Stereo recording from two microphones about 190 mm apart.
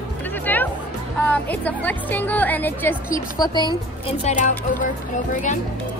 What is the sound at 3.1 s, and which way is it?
Speech, 20° left (ahead or behind).